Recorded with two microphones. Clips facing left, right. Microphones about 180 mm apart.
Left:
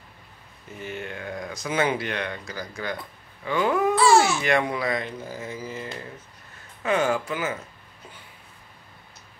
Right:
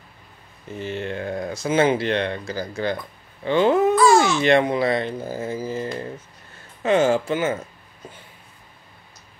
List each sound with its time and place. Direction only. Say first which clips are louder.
0.7 s speech: right 6 dB; 30° right (ahead or behind)
3.9 s babbling: left 1 dB; 30° left (ahead or behind)
4.3 s speech: right 6 dB; 25° right (ahead or behind)